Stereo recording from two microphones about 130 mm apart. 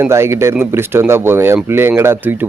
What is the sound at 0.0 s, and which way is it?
A man's voice, 20° right (ahead or behind).